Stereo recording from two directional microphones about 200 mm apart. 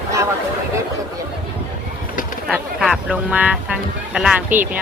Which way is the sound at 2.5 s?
Centre (ahead or behind).